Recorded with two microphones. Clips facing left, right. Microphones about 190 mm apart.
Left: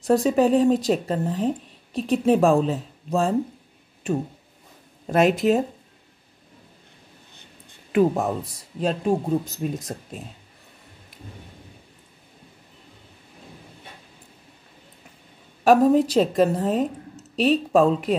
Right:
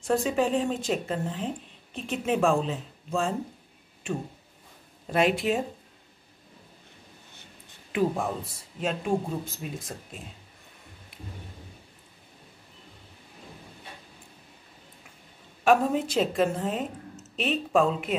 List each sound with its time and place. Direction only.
0.0 s speech: 40° left (ahead or behind)
7.9 s speech: 45° left (ahead or behind)
15.6 s a woman's voice: 40° left (ahead or behind)